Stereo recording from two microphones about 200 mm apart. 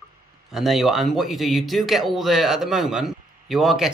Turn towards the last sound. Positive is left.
turn(degrees=0)  # may be behind; listen again after turning